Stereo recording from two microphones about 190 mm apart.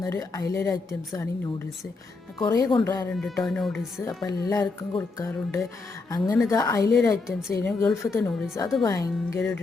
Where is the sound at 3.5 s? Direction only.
Centre (ahead or behind).